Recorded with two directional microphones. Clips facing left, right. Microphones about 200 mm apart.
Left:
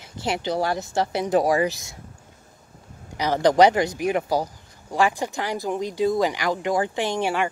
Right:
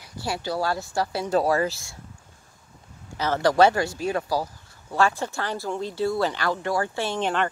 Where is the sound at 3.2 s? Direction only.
15° left (ahead or behind).